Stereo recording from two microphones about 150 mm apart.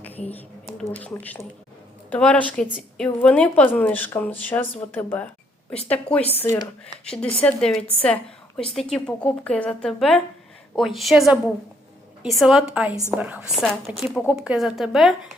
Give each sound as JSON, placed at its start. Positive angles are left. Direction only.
{"t": 0.3, "sound": "a woman's voice", "side_deg": 10}